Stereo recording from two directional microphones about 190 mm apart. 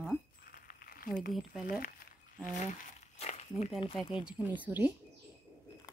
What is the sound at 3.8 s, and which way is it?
Speech, 25° left (ahead or behind).